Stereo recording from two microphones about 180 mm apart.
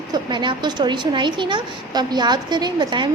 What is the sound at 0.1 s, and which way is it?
A woman's voice, 25° right (ahead or behind).